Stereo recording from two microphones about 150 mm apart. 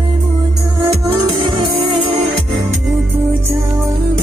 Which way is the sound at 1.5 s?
35° right (ahead or behind).